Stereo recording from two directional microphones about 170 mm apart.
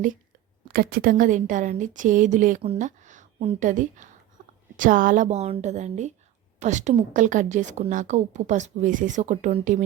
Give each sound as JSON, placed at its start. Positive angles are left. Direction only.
{"t": 0.7, "sound": "a woman's voice", "side_deg": -65}